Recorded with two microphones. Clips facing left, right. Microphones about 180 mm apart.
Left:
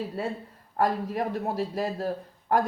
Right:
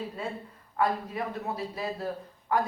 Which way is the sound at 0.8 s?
40° left (ahead or behind).